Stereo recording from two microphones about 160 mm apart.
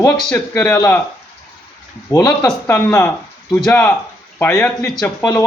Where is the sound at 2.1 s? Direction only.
20° left (ahead or behind).